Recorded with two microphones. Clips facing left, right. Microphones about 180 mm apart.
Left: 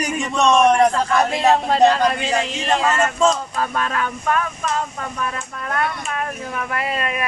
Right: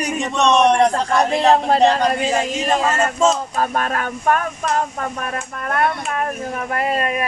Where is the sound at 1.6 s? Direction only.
40° right (ahead or behind).